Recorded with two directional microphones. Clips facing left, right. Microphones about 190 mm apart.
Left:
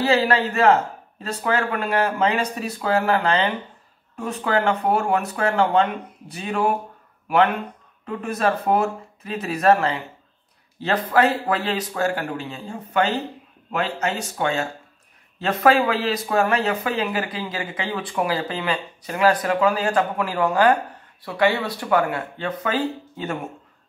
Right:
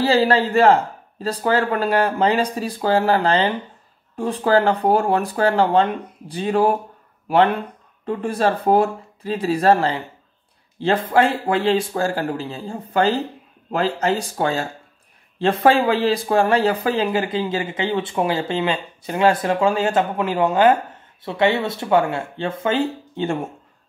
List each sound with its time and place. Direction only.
0.0 s speech: 30° right (ahead or behind)